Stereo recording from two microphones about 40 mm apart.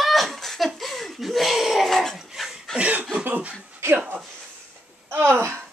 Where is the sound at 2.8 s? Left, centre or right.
Right.